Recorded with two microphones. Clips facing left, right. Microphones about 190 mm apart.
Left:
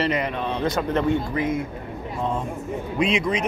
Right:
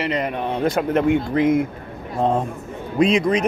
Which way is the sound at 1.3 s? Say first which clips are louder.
Right 7 dB; 75° right (ahead or behind).